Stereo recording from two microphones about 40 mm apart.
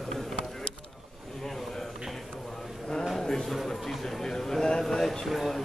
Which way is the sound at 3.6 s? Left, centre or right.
Centre.